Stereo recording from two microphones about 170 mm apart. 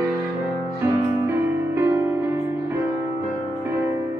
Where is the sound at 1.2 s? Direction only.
15° right (ahead or behind).